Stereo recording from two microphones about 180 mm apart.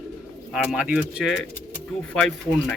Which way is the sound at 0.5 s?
5° right (ahead or behind).